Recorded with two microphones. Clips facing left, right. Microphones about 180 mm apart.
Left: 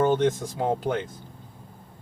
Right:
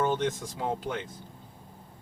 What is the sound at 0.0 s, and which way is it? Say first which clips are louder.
Speech: left 6 dB; 50° left (ahead or behind).